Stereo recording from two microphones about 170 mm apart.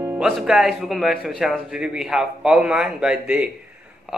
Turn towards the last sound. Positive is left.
turn(degrees=-5)  # may be behind; listen again after turning